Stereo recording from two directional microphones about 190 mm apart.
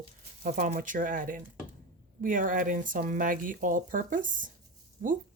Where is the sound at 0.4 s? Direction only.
50° right (ahead or behind).